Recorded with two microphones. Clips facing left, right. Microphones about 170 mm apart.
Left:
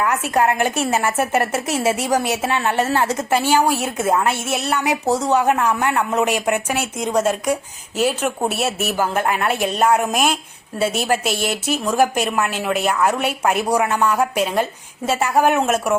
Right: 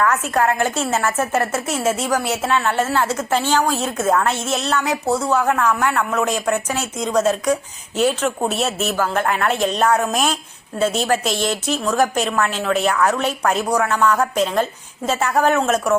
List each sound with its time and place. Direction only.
0.0 s a woman's voice: 15° left (ahead or behind)